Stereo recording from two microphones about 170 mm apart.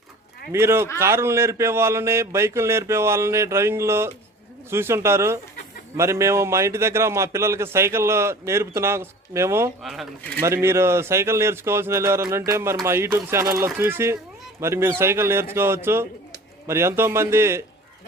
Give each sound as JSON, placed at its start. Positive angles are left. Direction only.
{"t": 0.5, "sound": "a man's voice", "side_deg": -15}
{"t": 9.8, "sound": "speech", "side_deg": 0}
{"t": 10.4, "sound": "a man's voice", "side_deg": -15}